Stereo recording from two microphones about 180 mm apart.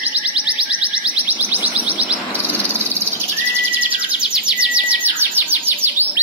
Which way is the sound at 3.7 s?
10° right (ahead or behind).